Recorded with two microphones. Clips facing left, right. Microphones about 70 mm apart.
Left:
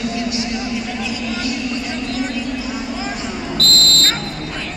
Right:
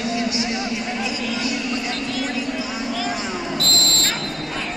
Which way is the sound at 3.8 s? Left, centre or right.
Left.